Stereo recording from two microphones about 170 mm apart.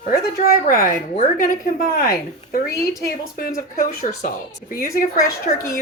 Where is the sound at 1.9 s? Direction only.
60° left (ahead or behind).